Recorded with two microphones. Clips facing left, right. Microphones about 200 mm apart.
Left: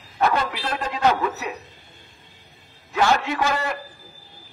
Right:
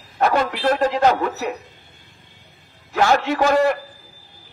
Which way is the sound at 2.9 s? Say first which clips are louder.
Right 3 dB; 40° right (ahead or behind).